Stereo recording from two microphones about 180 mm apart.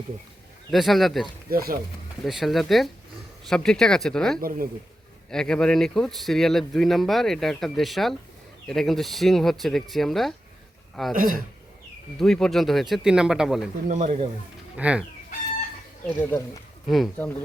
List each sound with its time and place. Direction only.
0.7 s speech: centre (ahead or behind)
1.5 s speech: 55° right (ahead or behind)
2.2 s speech: centre (ahead or behind)
4.4 s speech: 55° right (ahead or behind)
5.3 s speech: 5° left (ahead or behind)
11.1 s speech: 50° right (ahead or behind)
12.2 s speech: 5° left (ahead or behind)
13.8 s speech: 45° right (ahead or behind)
14.8 s chicken: 5° right (ahead or behind)
16.9 s speech: 5° left (ahead or behind)